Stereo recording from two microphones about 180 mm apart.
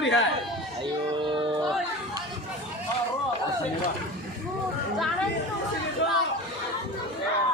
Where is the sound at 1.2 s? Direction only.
30° right (ahead or behind).